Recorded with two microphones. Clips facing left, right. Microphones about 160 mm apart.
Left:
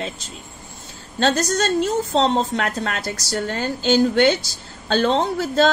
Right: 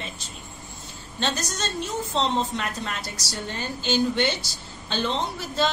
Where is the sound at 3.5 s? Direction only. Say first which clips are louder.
Left 7 dB; 80° left.